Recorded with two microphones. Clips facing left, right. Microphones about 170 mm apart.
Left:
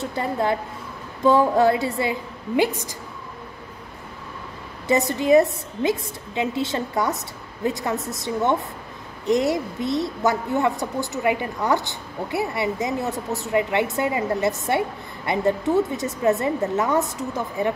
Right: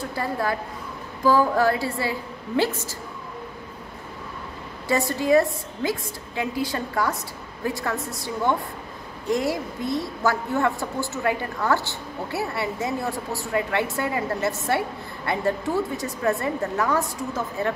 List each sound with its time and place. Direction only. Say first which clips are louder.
0.0 s a woman's voice: left 3 dB; 20° left (ahead or behind)
4.8 s a woman's voice: left 3 dB; 20° left (ahead or behind)